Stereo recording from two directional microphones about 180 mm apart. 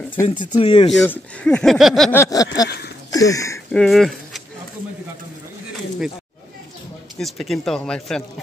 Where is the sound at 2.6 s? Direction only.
60° left (ahead or behind).